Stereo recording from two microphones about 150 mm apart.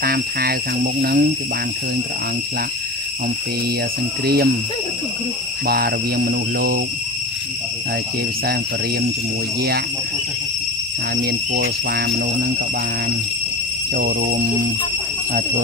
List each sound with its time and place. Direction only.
0.0 s speech: 90° right
4.2 s speech: 90° right
5.7 s speech: 90° right
11.1 s speech: 85° right
14.2 s music: 60° right (ahead or behind)